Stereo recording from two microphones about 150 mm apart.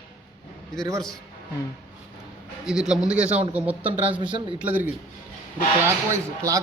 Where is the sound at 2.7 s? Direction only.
5° right (ahead or behind).